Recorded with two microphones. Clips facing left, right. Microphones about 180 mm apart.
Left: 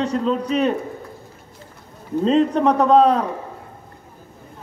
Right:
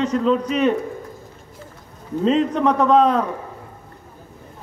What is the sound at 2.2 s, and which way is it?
A man's voice, 35° left (ahead or behind).